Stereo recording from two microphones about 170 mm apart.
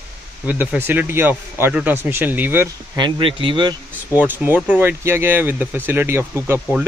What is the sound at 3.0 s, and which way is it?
Speech, 30° right (ahead or behind).